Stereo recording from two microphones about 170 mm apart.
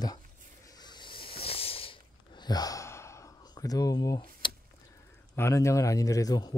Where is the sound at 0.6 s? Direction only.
25° left (ahead or behind).